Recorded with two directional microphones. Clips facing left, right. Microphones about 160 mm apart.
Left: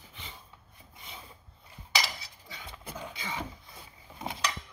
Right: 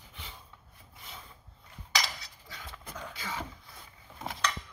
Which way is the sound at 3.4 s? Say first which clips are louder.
Left 2 dB; 15° left (ahead or behind).